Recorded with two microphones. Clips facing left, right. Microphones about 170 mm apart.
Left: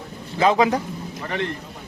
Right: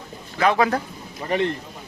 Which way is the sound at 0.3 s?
20° left (ahead or behind).